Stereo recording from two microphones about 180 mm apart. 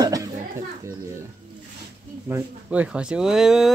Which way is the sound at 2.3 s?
10° right (ahead or behind).